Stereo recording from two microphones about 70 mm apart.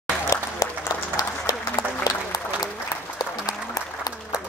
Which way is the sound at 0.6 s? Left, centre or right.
Left.